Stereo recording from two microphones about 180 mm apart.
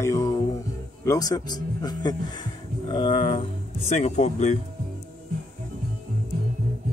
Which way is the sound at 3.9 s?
40° left (ahead or behind).